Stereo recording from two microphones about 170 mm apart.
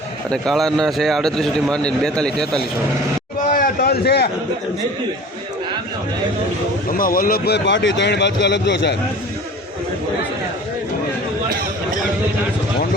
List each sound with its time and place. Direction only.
0.3 s a man's voice: centre (ahead or behind)
3.5 s a sound: 60° left (ahead or behind)
6.9 s speech: 55° left (ahead or behind); by 9.0 s 90° left